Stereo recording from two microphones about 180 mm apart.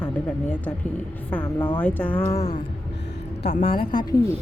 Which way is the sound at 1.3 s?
10° left (ahead or behind).